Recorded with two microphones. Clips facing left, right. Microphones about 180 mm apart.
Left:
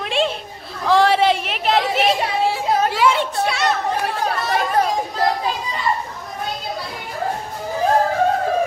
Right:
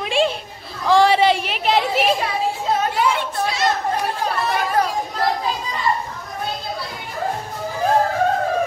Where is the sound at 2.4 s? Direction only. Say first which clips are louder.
Left 2 dB; 85° left.